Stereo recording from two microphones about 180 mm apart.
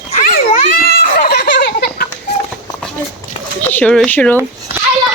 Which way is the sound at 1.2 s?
65° left (ahead or behind).